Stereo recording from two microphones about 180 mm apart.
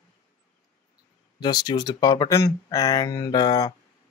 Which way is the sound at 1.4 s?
25° left (ahead or behind).